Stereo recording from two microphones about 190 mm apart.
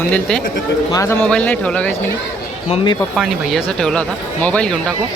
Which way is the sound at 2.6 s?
25° left (ahead or behind).